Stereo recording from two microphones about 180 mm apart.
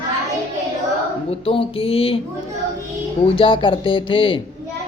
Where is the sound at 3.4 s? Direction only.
30° left (ahead or behind).